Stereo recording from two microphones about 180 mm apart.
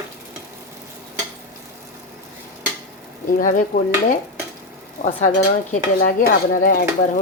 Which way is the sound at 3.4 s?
45° left (ahead or behind).